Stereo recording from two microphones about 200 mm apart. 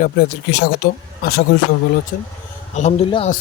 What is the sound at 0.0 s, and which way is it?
Speech, 60° left (ahead or behind).